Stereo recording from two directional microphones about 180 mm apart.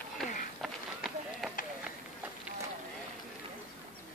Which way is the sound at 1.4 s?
Centre (ahead or behind).